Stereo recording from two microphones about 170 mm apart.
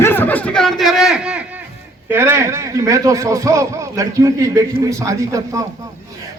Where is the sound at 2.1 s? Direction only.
15° right (ahead or behind).